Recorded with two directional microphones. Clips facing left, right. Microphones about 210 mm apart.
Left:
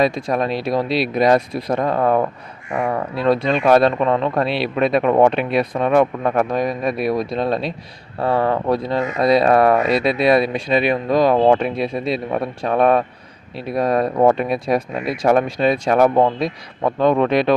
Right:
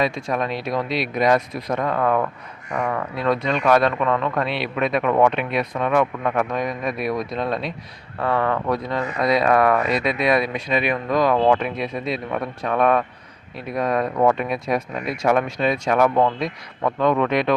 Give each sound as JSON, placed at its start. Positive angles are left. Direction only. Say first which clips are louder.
{"t": 0.0, "sound": "speech", "louder": "left 4 dB", "side_deg": 35}